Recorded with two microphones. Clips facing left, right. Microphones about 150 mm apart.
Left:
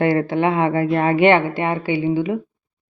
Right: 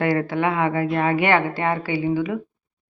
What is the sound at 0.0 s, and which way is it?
Speech, 25° left (ahead or behind).